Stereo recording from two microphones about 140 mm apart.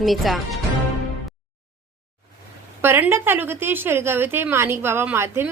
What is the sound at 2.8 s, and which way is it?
A woman's voice, 15° right (ahead or behind).